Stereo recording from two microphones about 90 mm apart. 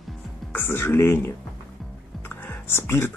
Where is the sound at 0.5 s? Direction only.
25° left (ahead or behind).